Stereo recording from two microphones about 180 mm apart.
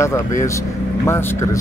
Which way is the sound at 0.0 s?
15° left (ahead or behind).